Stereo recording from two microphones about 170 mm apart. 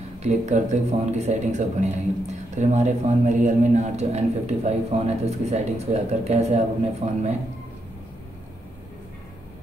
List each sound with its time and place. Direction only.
0.2 s speech: 40° right (ahead or behind)